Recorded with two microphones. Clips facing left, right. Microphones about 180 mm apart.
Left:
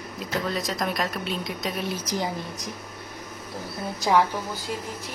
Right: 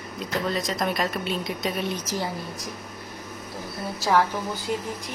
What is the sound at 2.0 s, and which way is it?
Speech, 15° left (ahead or behind).